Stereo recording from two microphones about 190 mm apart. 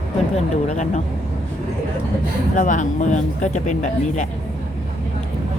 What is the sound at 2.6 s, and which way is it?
Speech, 40° left (ahead or behind).